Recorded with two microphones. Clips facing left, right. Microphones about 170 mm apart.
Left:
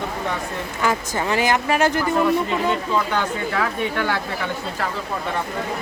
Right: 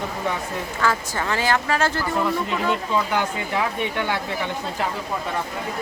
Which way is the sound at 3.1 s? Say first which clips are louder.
Left 1 dB; 15° right (ahead or behind).